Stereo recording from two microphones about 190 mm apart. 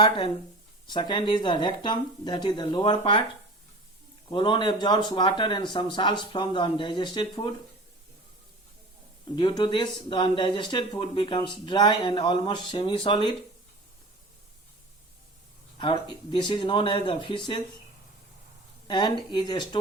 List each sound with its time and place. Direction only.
0.9 s speech: 25° left (ahead or behind)
4.3 s speech: 25° left (ahead or behind)
9.3 s speech: 25° left (ahead or behind)
15.8 s speech: 25° left (ahead or behind)
18.9 s speech: 25° left (ahead or behind)